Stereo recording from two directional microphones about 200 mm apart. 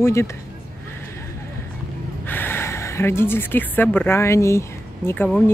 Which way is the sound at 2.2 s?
10° left (ahead or behind).